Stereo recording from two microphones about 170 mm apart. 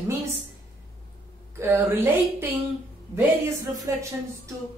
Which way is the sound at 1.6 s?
15° right (ahead or behind).